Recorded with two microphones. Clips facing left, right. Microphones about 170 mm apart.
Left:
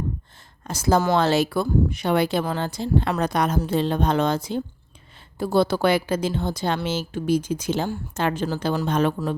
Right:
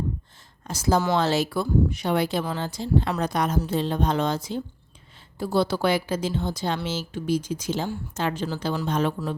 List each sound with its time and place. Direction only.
0.7 s a woman's voice: 55° left (ahead or behind)